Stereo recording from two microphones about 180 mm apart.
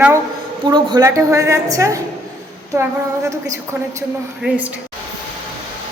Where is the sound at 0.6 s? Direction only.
25° right (ahead or behind).